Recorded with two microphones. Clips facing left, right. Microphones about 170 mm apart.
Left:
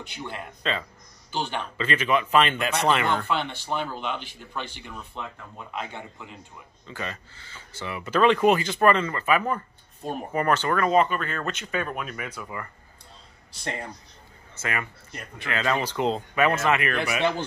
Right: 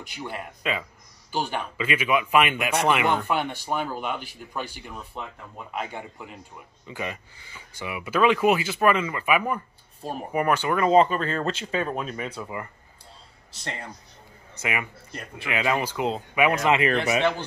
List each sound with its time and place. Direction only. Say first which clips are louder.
0.1 s speech: right 4 dB; 10° right (ahead or behind)
10.9 s speech: right 5 dB; 30° right (ahead or behind)
14.5 s speech: right 1 dB; 15° right (ahead or behind)